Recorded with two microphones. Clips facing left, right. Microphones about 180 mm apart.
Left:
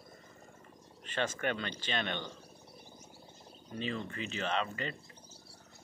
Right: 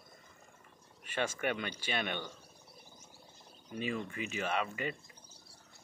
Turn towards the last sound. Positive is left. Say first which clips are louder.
# even
turn(degrees=-10)  # may be behind; listen again after turning